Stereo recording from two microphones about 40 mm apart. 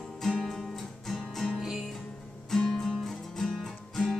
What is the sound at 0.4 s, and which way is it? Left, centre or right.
Music, centre.